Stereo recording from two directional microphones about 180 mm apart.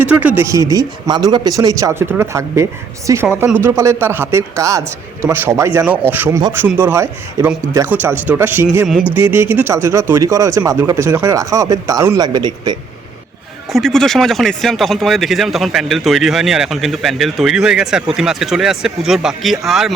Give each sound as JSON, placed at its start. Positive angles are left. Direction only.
{"t": 0.0, "sound": "speech", "side_deg": -10}
{"t": 13.7, "sound": "speech", "side_deg": 0}